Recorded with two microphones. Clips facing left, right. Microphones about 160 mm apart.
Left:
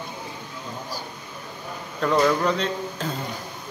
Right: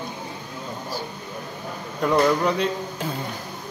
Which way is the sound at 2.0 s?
10° right (ahead or behind).